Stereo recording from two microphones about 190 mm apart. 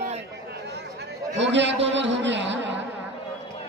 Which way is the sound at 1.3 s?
70° right (ahead or behind).